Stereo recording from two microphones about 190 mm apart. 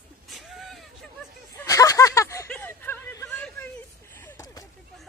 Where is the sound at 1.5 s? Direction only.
15° left (ahead or behind).